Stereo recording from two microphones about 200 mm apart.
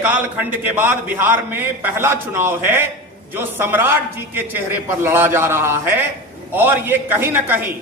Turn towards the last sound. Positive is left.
turn(degrees=-10)  # may be behind; listen again after turning